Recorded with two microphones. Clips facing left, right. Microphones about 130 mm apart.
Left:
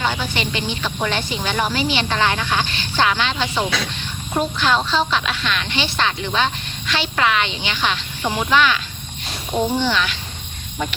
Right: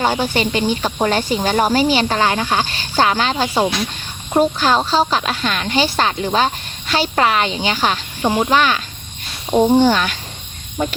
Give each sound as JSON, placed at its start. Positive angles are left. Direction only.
{"t": 0.0, "sound": "speech", "side_deg": -40}